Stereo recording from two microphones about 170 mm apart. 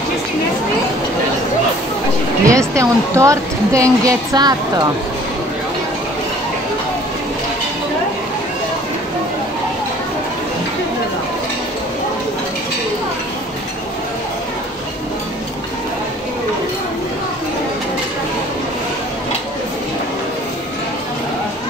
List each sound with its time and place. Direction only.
2.4 s a woman's voice: 20° right (ahead or behind)